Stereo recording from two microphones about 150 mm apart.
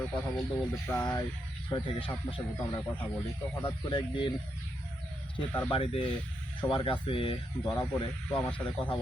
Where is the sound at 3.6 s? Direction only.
30° left (ahead or behind).